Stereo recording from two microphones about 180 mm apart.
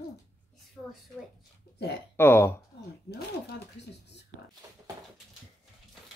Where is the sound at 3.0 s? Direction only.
60° left (ahead or behind).